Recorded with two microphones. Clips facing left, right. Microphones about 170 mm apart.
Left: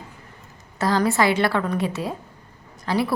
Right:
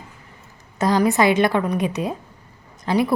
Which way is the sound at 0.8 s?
20° right (ahead or behind).